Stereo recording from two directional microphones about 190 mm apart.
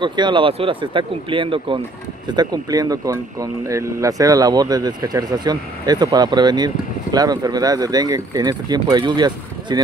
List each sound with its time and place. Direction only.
0.0 s speech: 25° right (ahead or behind)